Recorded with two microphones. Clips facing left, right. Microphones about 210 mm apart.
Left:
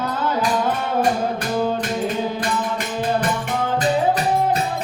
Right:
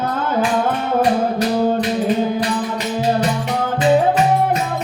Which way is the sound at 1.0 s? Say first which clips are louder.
Right 5 dB; 50° left (ahead or behind).